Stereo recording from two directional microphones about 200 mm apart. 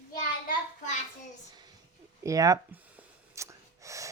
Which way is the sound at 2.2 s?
15° right (ahead or behind).